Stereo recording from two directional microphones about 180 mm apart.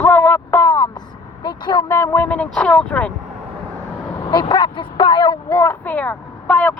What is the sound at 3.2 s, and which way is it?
Vehicle, 40° right (ahead or behind).